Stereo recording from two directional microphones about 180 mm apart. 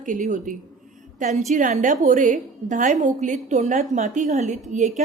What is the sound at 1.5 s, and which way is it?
A woman's voice, 45° right (ahead or behind).